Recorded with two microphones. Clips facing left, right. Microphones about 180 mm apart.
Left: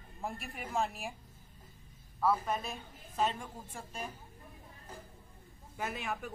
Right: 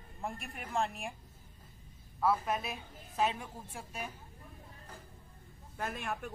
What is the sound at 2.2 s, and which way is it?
A woman's voice, 5° right (ahead or behind).